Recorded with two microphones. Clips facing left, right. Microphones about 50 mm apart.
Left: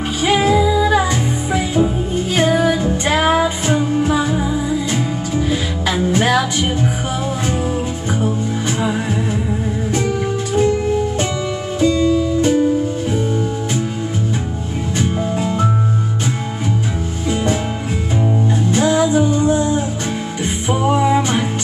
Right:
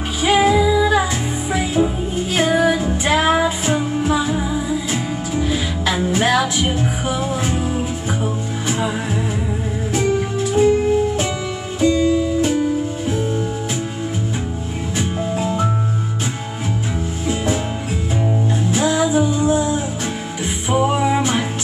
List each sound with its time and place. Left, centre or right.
0.2 s music: centre
8.2 s music: centre
9.9 s music: centre
11.8 s music: centre
12.4 s music: centre
15.0 s music: centre
18.7 s music: centre